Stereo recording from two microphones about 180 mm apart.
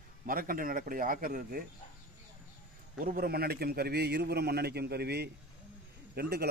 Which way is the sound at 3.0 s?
55° right (ahead or behind).